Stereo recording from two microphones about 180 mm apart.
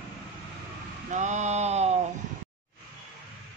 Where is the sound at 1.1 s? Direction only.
40° right (ahead or behind).